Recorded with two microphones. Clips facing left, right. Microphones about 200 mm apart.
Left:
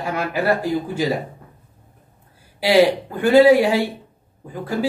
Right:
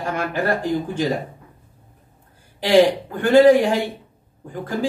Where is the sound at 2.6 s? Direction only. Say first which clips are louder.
Even; 10° left (ahead or behind).